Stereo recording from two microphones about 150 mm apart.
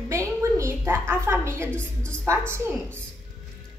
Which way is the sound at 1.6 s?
10° left (ahead or behind).